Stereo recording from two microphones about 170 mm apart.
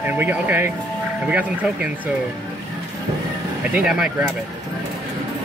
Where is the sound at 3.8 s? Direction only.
5° right (ahead or behind).